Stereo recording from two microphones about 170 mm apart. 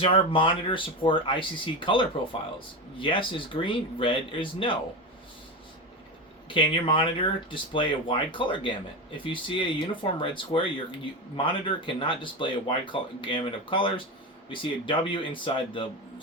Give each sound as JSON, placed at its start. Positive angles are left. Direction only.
{"t": 0.0, "sound": "speech", "side_deg": 30}
{"t": 6.5, "sound": "speech", "side_deg": 30}